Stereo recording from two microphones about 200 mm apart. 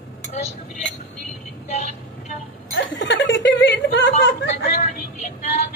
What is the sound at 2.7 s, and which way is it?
Speech, 70° left (ahead or behind).